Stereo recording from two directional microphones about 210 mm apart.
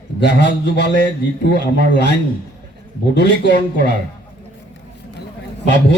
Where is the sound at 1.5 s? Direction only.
40° right (ahead or behind).